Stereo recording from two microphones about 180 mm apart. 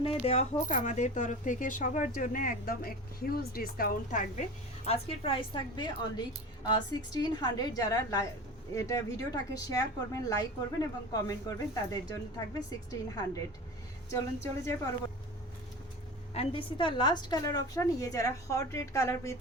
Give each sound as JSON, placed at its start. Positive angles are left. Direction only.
{"t": 0.0, "sound": "speech", "side_deg": 30}
{"t": 4.9, "sound": "a woman's voice", "side_deg": 30}
{"t": 16.3, "sound": "a woman's voice", "side_deg": 30}